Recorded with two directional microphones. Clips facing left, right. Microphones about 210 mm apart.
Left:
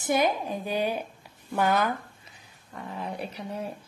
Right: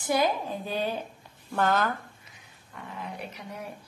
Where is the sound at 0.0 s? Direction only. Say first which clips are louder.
Left 1 dB; 20° left (ahead or behind).